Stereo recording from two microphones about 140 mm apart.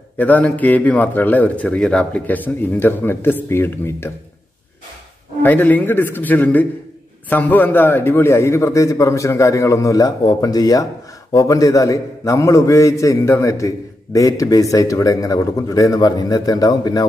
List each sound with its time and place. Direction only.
0.2 s a man's voice: 10° left (ahead or behind)
5.4 s a man's voice: 15° left (ahead or behind)